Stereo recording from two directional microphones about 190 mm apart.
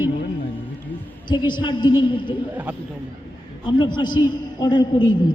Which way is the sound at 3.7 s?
25° left (ahead or behind).